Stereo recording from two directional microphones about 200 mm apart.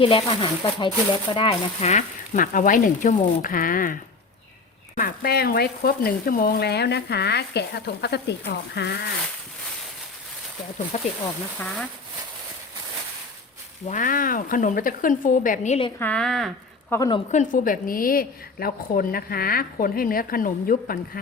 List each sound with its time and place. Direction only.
0.0 s speech: 25° left (ahead or behind); by 3.9 s 45° left (ahead or behind)
4.9 s speech: 50° left (ahead or behind)
10.9 s speech: 35° left (ahead or behind)
13.8 s a woman's voice: 40° left (ahead or behind)
16.0 s speech: 5° left (ahead or behind)
16.9 s speech: 15° left (ahead or behind)
17.3 s a woman's voice: 40° left (ahead or behind)